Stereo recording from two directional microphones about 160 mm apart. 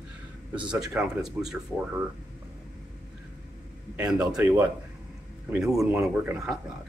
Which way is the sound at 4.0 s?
5° right (ahead or behind).